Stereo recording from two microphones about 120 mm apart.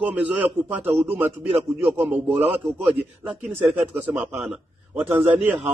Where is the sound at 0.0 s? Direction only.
10° right (ahead or behind).